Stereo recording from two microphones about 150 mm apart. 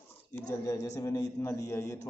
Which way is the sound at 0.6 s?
20° left (ahead or behind).